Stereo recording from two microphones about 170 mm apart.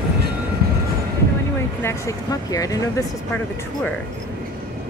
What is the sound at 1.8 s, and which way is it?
Speech, 15° left (ahead or behind).